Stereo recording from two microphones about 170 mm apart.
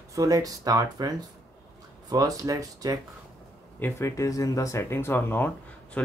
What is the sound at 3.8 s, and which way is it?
Speech, 15° left (ahead or behind).